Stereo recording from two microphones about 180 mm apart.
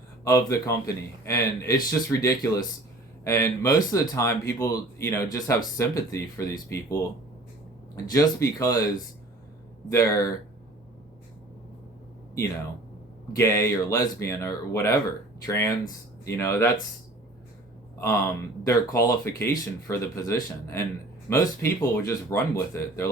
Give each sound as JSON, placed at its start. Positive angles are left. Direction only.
{"t": 0.3, "sound": "a man's voice", "side_deg": 15}
{"t": 9.9, "sound": "a man's voice", "side_deg": 15}
{"t": 13.3, "sound": "a man's voice", "side_deg": 15}
{"t": 18.6, "sound": "a man's voice", "side_deg": 15}